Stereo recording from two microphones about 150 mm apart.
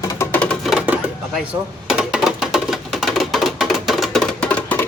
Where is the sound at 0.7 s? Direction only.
10° right (ahead or behind).